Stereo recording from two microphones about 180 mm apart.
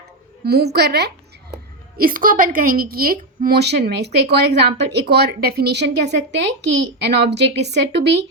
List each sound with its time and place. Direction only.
0.4 s a woman's voice: 65° right (ahead or behind)
2.0 s a woman's voice: 50° right (ahead or behind); by 8.2 s 75° right (ahead or behind)